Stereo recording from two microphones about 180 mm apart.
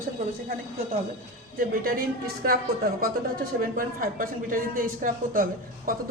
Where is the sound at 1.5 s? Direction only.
55° right (ahead or behind).